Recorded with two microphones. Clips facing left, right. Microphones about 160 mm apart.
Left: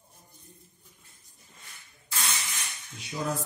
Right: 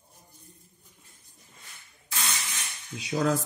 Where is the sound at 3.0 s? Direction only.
90° right.